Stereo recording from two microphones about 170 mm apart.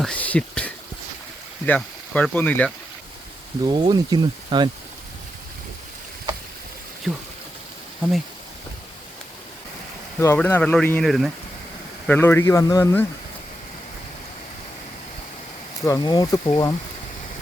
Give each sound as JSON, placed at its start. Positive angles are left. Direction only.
{"t": 0.0, "sound": "speech", "side_deg": 10}
{"t": 3.7, "sound": "speech", "side_deg": -25}
{"t": 10.2, "sound": "speech", "side_deg": 15}
{"t": 12.0, "sound": "speech", "side_deg": 10}
{"t": 15.8, "sound": "speech", "side_deg": 20}